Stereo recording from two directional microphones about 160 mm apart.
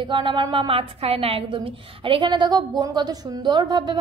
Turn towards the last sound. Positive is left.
turn(degrees=-30)  # may be behind; listen again after turning